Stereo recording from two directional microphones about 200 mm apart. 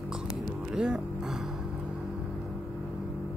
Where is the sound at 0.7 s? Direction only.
5° right (ahead or behind).